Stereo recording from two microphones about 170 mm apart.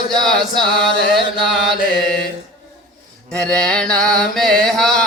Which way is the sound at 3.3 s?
5° left (ahead or behind).